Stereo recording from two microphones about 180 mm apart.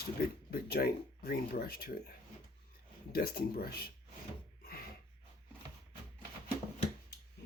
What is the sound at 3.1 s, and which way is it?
Speech, 60° left (ahead or behind).